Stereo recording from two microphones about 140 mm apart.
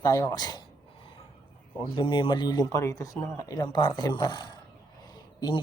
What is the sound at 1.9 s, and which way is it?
A man's voice, 35° left (ahead or behind).